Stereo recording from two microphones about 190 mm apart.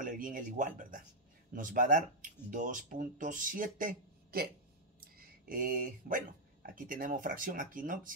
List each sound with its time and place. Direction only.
0.0 s speech: 45° right (ahead or behind)